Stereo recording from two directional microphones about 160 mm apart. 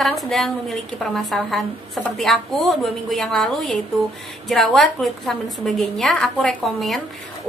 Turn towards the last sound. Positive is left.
turn(degrees=0)  # may be behind; listen again after turning